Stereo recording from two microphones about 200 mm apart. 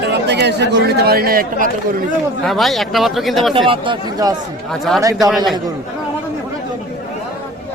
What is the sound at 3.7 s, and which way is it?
Speech, 25° right (ahead or behind).